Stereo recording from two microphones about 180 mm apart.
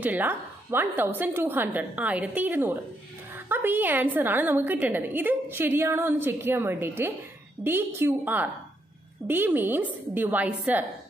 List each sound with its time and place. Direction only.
0.0 s a woman's voice: 10° right (ahead or behind)